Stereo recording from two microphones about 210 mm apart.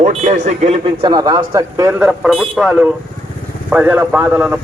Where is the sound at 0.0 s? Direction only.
35° right (ahead or behind).